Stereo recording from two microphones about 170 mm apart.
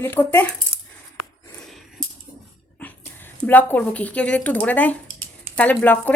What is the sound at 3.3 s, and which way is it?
A woman's voice, 10° left (ahead or behind).